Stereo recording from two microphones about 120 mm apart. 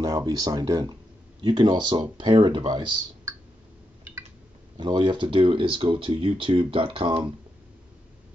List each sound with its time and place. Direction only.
0.0 s speech: 35° right (ahead or behind)
4.7 s speech: 40° right (ahead or behind)